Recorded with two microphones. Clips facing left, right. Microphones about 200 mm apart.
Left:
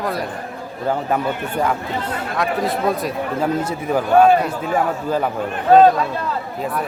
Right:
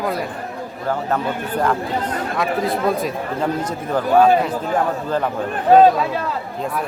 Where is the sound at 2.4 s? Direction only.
Centre (ahead or behind).